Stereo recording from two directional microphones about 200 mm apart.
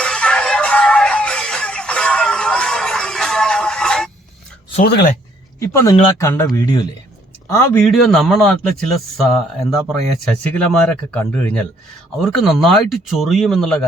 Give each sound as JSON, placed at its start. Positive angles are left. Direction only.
{"t": 0.0, "sound": "music", "side_deg": 5}
{"t": 4.8, "sound": "speech", "side_deg": 50}
{"t": 5.5, "sound": "a man's voice", "side_deg": 15}